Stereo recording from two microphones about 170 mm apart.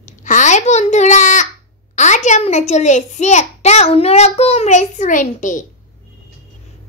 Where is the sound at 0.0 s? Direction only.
45° left (ahead or behind).